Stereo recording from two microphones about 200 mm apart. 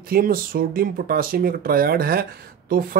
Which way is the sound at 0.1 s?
45° right (ahead or behind).